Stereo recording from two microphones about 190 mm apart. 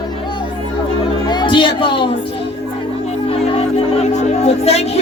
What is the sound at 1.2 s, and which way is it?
Speech, 25° left (ahead or behind).